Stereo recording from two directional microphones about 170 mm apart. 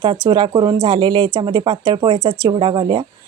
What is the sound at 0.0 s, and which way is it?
A woman's voice, 30° right (ahead or behind).